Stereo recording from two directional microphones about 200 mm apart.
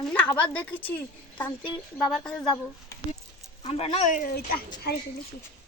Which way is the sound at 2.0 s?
Centre (ahead or behind).